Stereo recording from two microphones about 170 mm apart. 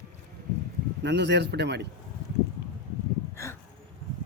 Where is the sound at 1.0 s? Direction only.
90° right.